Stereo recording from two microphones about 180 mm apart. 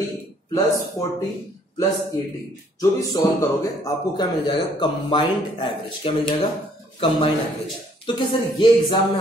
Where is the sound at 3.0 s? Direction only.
15° left (ahead or behind).